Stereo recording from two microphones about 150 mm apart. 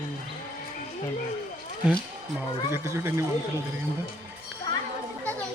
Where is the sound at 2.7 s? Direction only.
15° right (ahead or behind).